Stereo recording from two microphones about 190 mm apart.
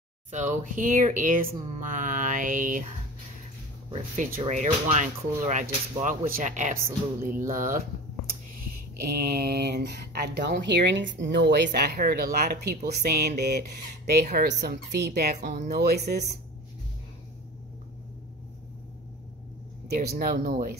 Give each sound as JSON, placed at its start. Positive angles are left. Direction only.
{"t": 0.3, "sound": "speech", "side_deg": -40}
{"t": 4.2, "sound": "speech", "side_deg": -40}
{"t": 9.3, "sound": "speech", "side_deg": -55}
{"t": 15.4, "sound": "speech", "side_deg": -40}
{"t": 15.8, "sound": "speech", "side_deg": -60}
{"t": 19.9, "sound": "speech", "side_deg": -55}